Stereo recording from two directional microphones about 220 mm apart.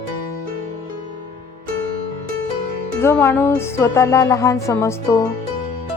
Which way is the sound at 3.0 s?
10° left (ahead or behind).